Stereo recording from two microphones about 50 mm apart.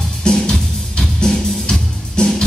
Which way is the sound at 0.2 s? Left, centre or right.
Centre.